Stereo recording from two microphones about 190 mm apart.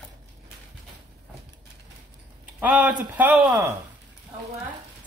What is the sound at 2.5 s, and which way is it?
A woman's voice, 10° right (ahead or behind).